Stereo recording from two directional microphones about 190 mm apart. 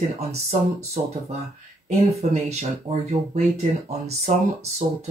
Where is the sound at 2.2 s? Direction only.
35° right (ahead or behind).